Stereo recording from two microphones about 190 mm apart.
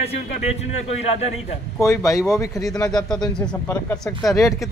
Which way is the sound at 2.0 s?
15° left (ahead or behind).